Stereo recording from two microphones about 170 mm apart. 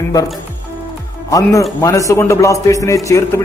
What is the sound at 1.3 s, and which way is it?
Speech, 20° left (ahead or behind).